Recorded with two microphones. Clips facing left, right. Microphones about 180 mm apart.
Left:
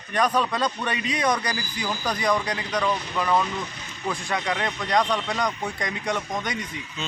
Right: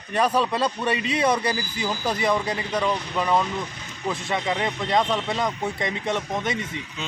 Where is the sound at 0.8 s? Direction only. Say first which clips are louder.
Right 3 dB; 30° right (ahead or behind).